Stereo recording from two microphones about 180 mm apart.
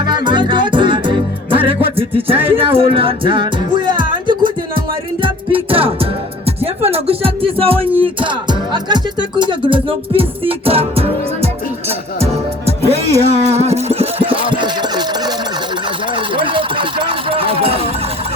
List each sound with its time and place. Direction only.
0.1 s music: 25° right (ahead or behind)